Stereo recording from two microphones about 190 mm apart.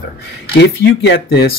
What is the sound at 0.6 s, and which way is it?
Speech, 60° left (ahead or behind).